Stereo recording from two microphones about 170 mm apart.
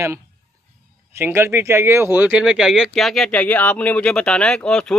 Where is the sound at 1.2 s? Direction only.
15° right (ahead or behind).